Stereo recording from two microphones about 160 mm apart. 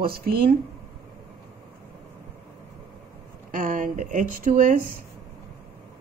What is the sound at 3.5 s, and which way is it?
Speech, 55° right (ahead or behind).